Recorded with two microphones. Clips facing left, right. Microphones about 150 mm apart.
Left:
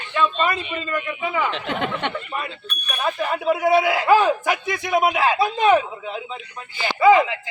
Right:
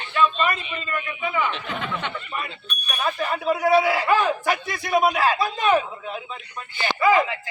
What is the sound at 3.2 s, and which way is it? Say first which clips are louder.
A man's voice: left 3 dB; 10° left (ahead or behind).